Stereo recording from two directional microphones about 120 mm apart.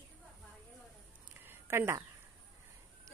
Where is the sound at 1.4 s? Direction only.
20° right (ahead or behind).